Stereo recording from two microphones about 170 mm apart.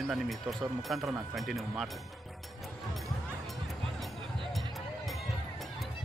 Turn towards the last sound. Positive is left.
turn(degrees=0)  # may be behind; listen again after turning